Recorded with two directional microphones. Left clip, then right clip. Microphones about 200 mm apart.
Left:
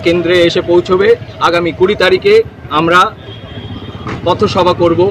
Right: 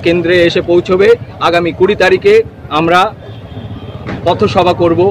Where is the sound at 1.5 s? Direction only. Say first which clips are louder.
Right 1 dB; 25° right (ahead or behind).